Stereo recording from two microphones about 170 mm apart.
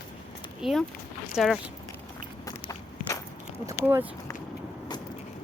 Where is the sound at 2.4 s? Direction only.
20° left (ahead or behind).